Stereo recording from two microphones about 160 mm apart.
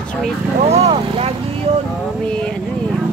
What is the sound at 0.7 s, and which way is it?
Vehicle, 40° right (ahead or behind).